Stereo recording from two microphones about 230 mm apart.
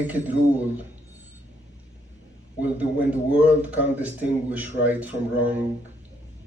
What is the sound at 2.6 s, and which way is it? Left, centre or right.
A man's voice, centre.